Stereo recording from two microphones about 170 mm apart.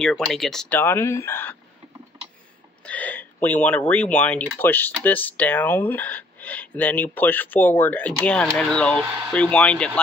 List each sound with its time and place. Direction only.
0.0 s speech: centre (ahead or behind)
0.7 s speech: 15° left (ahead or behind)
2.8 s speech: 10° left (ahead or behind)